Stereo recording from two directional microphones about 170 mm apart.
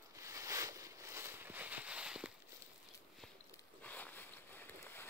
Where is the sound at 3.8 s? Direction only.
10° left (ahead or behind).